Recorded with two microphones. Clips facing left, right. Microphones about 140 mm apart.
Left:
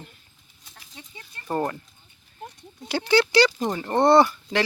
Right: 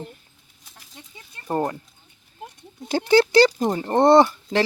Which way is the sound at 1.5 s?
20° right (ahead or behind).